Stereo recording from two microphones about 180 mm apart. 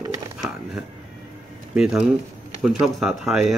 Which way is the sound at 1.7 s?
5° right (ahead or behind).